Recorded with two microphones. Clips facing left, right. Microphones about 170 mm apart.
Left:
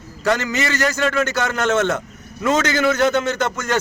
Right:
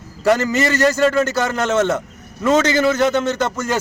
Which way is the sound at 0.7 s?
30° right (ahead or behind).